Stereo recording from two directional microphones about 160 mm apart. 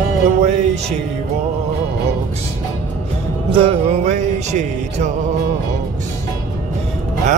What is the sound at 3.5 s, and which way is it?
Music, 35° right (ahead or behind).